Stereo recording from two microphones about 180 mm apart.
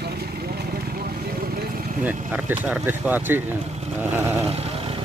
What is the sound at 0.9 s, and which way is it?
Vehicle, 55° right (ahead or behind).